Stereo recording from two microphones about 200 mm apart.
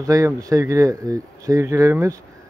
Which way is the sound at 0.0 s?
15° right (ahead or behind).